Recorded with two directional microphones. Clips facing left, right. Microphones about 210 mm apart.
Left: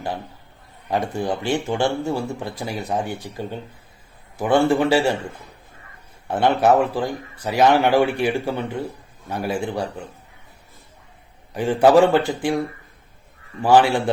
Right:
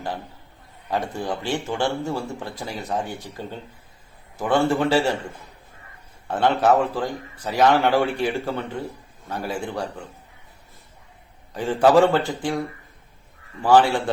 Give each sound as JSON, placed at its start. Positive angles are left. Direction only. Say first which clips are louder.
{"t": 0.9, "sound": "speech", "louder": "left 3 dB", "side_deg": 15}
{"t": 6.2, "sound": "speech", "louder": "left 2 dB", "side_deg": 10}
{"t": 11.5, "sound": "speech", "louder": "left 2 dB", "side_deg": 15}
{"t": 13.6, "sound": "speech", "louder": "left 1 dB", "side_deg": 10}